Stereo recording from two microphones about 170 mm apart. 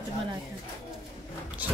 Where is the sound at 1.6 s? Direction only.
10° right (ahead or behind).